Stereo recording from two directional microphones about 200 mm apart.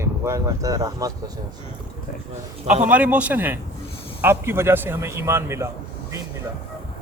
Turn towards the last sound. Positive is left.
turn(degrees=-15)  # may be behind; listen again after turning